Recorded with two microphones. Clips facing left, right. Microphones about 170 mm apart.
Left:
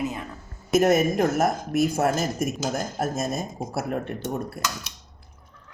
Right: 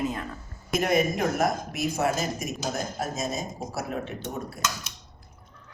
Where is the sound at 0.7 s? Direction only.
50° left (ahead or behind).